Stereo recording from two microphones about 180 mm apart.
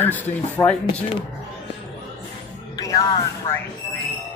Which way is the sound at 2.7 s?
20° left (ahead or behind).